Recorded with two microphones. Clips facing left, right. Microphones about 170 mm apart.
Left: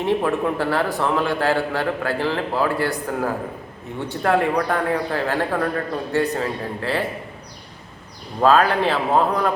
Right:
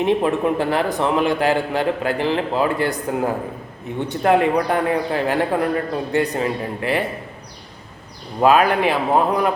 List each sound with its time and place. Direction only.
0.0 s a man's voice: 20° right (ahead or behind)
8.4 s a man's voice: 15° right (ahead or behind)